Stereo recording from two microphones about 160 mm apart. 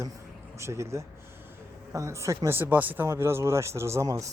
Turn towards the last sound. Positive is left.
turn(degrees=-20)  # may be behind; listen again after turning